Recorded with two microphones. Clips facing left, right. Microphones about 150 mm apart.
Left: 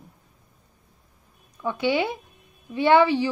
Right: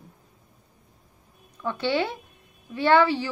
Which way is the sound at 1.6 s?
15° left (ahead or behind).